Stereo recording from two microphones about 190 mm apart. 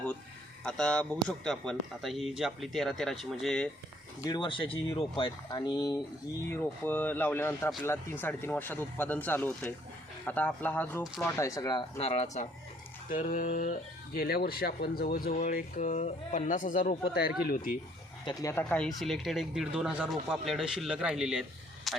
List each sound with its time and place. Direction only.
0.6 s speech: 5° left (ahead or behind)
4.3 s speech: 25° left (ahead or behind)
6.5 s speech: 10° left (ahead or behind); by 13.7 s 45° left (ahead or behind)
14.2 s speech: 55° left (ahead or behind)
18.3 s speech: 15° left (ahead or behind); by 21.4 s 5° right (ahead or behind)
21.9 s a sound: centre (ahead or behind)